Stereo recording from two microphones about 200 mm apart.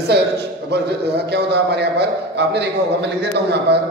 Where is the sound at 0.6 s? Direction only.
55° right (ahead or behind).